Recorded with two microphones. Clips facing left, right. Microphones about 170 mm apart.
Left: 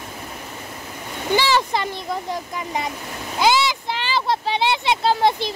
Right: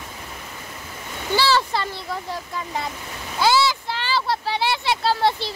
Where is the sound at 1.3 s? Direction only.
15° left (ahead or behind).